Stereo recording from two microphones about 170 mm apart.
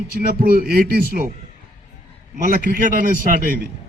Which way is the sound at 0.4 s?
60° right (ahead or behind).